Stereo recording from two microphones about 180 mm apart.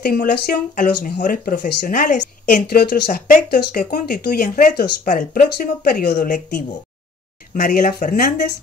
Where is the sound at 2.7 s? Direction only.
60° left (ahead or behind).